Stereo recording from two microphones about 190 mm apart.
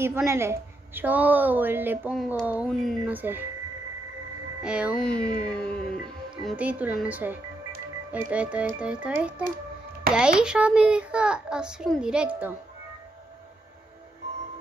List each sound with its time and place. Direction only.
0.0 s a woman's voice: 15° right (ahead or behind)
4.6 s a child's voice: 5° right (ahead or behind)
6.4 s a woman's voice: 5° right (ahead or behind)